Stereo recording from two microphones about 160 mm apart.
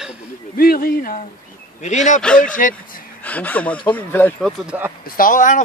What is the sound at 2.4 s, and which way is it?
Speech, 55° left (ahead or behind).